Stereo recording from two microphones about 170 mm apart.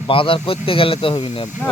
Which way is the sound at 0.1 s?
30° left (ahead or behind).